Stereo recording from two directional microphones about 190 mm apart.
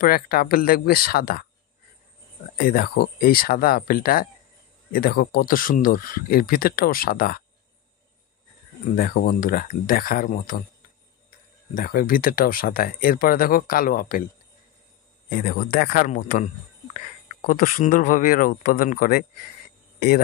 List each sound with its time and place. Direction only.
0.0 s speech: 50° left (ahead or behind)
2.5 s speech: 50° left (ahead or behind)
8.9 s speech: 50° left (ahead or behind)
15.2 s speech: 50° left (ahead or behind)